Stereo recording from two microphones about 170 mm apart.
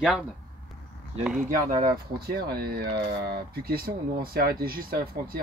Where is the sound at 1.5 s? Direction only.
50° right (ahead or behind).